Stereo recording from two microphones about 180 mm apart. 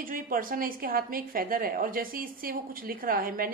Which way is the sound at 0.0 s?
50° right (ahead or behind).